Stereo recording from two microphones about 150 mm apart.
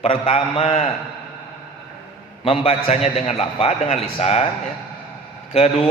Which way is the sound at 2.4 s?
40° left (ahead or behind).